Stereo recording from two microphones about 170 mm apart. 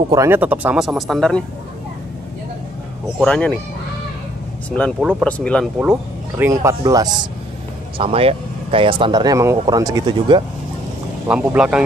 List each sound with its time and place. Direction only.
0.1 s speech: 15° right (ahead or behind); by 1.4 s centre (ahead or behind)
3.2 s speech: 5° left (ahead or behind)
4.6 s speech: 10° left (ahead or behind)
5.8 s speech: 10° right (ahead or behind)
8.0 s speech: 35° right (ahead or behind)
11.2 s speech: 5° right (ahead or behind)